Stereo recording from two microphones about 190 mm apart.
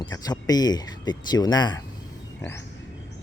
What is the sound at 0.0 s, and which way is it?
Speech, 20° left (ahead or behind).